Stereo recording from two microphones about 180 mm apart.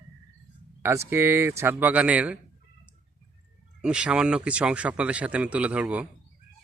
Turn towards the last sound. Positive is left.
turn(degrees=-5)  # may be behind; listen again after turning